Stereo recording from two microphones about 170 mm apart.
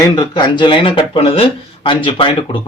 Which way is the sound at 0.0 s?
20° left (ahead or behind).